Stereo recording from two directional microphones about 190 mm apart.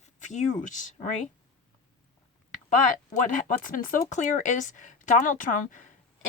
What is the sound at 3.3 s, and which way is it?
Speech, 45° left (ahead or behind).